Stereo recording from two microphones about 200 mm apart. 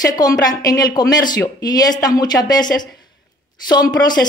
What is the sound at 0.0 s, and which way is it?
Speech, 20° left (ahead or behind).